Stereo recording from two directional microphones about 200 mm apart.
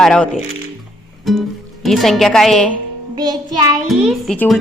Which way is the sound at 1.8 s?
Centre (ahead or behind).